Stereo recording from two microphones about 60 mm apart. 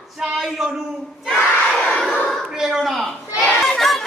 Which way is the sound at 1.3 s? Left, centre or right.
Centre.